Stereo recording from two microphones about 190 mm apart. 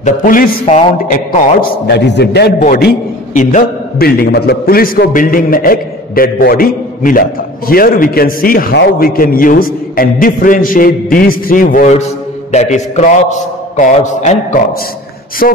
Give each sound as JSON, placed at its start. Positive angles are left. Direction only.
{"t": 0.0, "sound": "a man's voice", "side_deg": 45}
{"t": 2.6, "sound": "a man's voice", "side_deg": 50}